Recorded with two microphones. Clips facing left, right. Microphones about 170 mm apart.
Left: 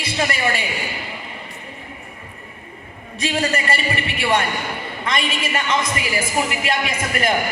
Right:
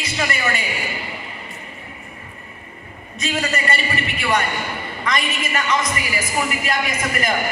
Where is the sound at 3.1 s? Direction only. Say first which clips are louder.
Left 2 dB; 30° left (ahead or behind).